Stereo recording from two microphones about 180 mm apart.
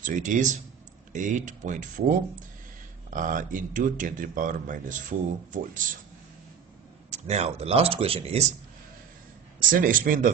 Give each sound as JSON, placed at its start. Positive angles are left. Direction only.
{"t": 0.0, "sound": "speech", "side_deg": -45}
{"t": 7.1, "sound": "speech", "side_deg": -35}
{"t": 9.6, "sound": "speech", "side_deg": -50}